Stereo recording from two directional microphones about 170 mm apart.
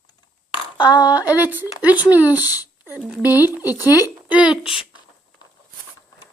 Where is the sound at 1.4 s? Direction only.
10° right (ahead or behind).